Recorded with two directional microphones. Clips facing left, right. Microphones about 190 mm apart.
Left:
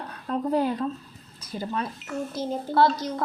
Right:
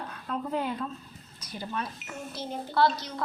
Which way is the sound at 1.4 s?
30° left (ahead or behind).